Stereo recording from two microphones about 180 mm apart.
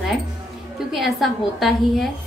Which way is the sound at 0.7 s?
Centre (ahead or behind).